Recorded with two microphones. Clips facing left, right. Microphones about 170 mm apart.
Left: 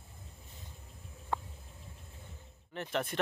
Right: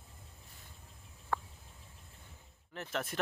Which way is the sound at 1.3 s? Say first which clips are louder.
Even; 15° left (ahead or behind).